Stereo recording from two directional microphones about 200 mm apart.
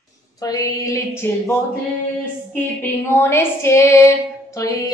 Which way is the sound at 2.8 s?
15° left (ahead or behind).